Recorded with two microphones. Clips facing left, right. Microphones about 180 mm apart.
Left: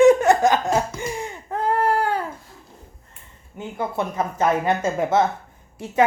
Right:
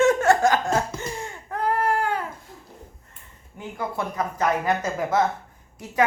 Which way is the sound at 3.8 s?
25° left (ahead or behind).